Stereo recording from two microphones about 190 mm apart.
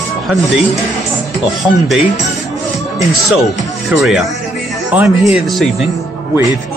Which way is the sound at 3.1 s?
Centre (ahead or behind).